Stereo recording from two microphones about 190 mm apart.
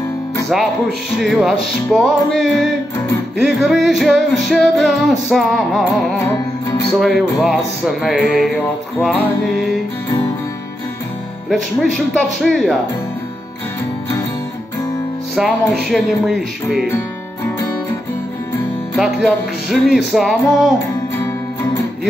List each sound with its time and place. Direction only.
1.1 s music: centre (ahead or behind)
11.4 s music: centre (ahead or behind)
15.3 s music: centre (ahead or behind)
18.9 s music: centre (ahead or behind)